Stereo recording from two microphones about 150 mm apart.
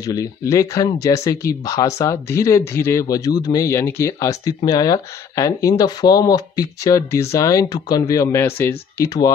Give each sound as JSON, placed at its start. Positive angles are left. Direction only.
{"t": 0.0, "sound": "speech", "side_deg": 25}